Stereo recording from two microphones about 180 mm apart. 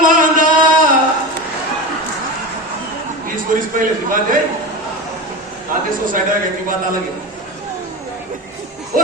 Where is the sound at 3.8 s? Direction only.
50° right (ahead or behind).